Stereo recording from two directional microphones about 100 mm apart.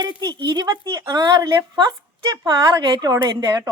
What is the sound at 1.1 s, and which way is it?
A woman's voice, 40° right (ahead or behind).